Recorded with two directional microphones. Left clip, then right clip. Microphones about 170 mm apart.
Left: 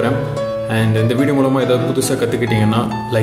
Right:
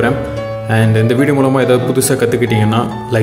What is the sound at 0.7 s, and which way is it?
Speech, 25° right (ahead or behind).